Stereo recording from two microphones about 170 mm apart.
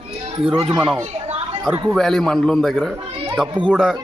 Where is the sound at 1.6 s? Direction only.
10° right (ahead or behind).